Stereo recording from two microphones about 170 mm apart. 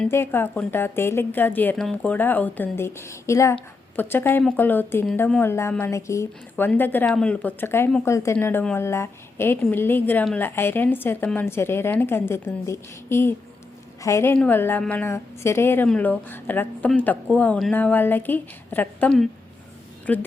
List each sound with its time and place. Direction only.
0.1 s a woman's voice: 15° left (ahead or behind)